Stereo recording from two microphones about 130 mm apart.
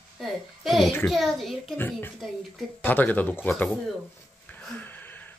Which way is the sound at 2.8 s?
15° left (ahead or behind).